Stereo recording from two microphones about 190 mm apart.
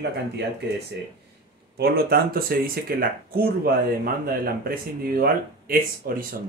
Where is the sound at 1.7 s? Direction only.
55° right (ahead or behind).